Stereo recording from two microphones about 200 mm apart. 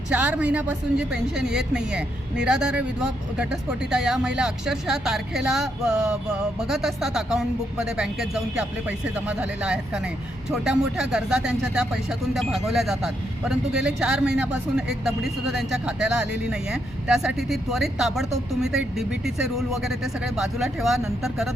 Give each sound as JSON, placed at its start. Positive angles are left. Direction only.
{"t": 0.1, "sound": "speech", "side_deg": -5}